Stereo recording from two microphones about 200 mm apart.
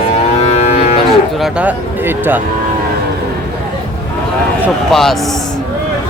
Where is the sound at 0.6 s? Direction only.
35° left (ahead or behind).